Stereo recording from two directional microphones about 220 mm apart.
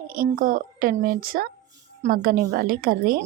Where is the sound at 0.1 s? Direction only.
40° right (ahead or behind).